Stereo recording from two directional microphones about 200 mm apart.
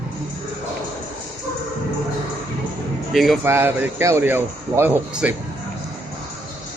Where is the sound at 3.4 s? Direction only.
10° right (ahead or behind).